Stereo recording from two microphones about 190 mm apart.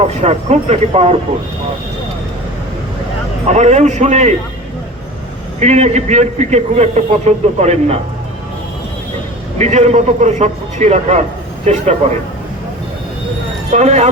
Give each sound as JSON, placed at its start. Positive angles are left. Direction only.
{"t": 0.0, "sound": "a man's voice", "side_deg": -35}
{"t": 3.4, "sound": "a man's voice", "side_deg": -35}
{"t": 5.5, "sound": "a man's voice", "side_deg": -35}
{"t": 9.6, "sound": "a man's voice", "side_deg": -35}
{"t": 13.7, "sound": "a man's voice", "side_deg": -35}